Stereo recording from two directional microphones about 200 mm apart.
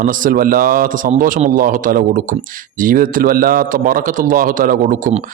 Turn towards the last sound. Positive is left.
turn(degrees=-40)  # may be behind; listen again after turning